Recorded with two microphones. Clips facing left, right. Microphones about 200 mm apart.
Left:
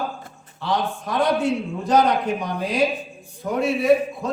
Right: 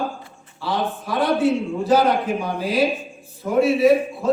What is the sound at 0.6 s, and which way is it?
A man's voice, 5° right (ahead or behind).